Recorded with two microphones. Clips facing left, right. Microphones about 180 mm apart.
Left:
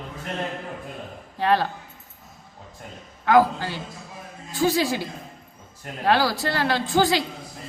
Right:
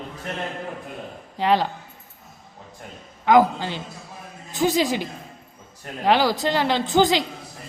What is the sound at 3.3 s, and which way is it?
A woman's voice, 20° right (ahead or behind).